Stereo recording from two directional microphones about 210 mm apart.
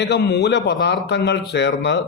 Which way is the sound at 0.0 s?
50° left (ahead or behind).